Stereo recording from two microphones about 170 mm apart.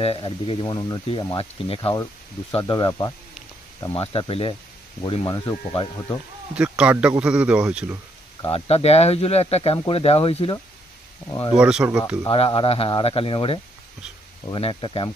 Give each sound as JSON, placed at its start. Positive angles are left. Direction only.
{"t": 0.0, "sound": "speech", "side_deg": 35}
{"t": 6.5, "sound": "speech", "side_deg": -5}
{"t": 8.4, "sound": "speech", "side_deg": 35}
{"t": 11.5, "sound": "speech", "side_deg": -5}
{"t": 12.3, "sound": "speech", "side_deg": 30}